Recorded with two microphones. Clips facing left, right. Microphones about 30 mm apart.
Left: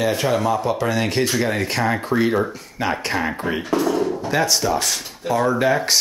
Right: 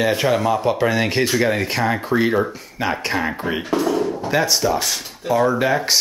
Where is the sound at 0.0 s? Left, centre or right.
Centre.